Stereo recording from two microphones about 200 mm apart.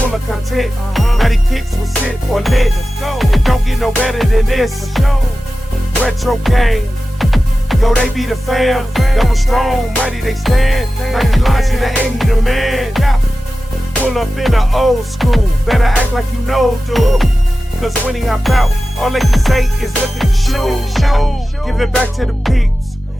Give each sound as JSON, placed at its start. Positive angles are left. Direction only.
{"t": 0.5, "sound": "music", "side_deg": 0}